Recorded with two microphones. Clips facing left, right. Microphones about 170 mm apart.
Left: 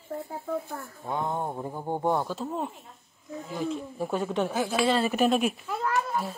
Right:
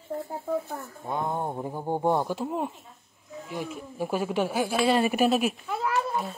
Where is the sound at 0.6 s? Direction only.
15° right (ahead or behind).